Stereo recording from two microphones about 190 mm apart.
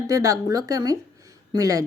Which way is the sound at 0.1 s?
20° right (ahead or behind).